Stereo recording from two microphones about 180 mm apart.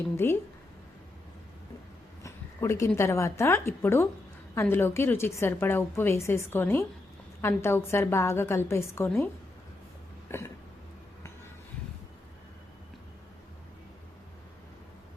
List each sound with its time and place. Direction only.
0.2 s a woman's voice: 10° left (ahead or behind)
2.2 s a woman's voice: 15° left (ahead or behind)
9.0 s a woman's voice: centre (ahead or behind)
10.3 s throat clearing: 15° left (ahead or behind)